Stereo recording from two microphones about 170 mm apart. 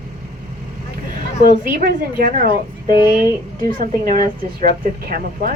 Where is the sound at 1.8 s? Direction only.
55° right (ahead or behind).